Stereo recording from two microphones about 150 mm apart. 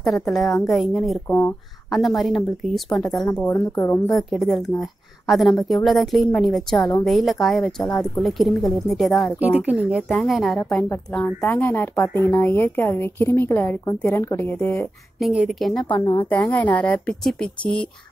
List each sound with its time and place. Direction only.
0.0 s a woman's voice: centre (ahead or behind)
3.4 s speech: 20° left (ahead or behind)
4.1 s a woman's voice: centre (ahead or behind)
9.4 s a woman's voice: 10° right (ahead or behind); by 14.9 s 10° left (ahead or behind)
15.1 s a woman's voice: centre (ahead or behind)